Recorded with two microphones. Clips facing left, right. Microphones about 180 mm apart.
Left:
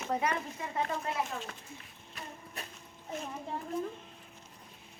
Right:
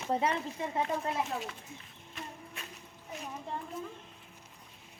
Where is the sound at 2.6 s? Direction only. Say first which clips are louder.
Left 6 dB; 40° left (ahead or behind).